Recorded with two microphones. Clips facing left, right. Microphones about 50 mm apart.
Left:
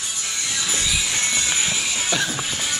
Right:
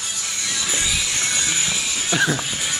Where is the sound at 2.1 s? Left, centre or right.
Centre.